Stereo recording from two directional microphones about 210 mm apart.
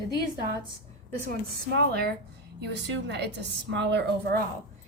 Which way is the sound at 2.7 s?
55° right (ahead or behind).